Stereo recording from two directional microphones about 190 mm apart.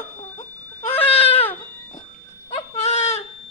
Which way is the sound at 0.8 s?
30° left (ahead or behind).